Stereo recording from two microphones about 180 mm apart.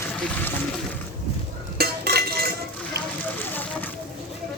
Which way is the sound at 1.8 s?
60° right (ahead or behind).